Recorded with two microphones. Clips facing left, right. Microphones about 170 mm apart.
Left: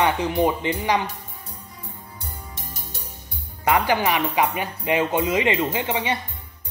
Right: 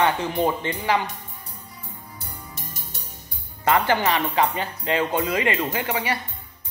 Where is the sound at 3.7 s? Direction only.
15° left (ahead or behind).